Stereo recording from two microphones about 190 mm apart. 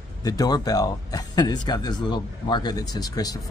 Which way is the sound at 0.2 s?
20° left (ahead or behind).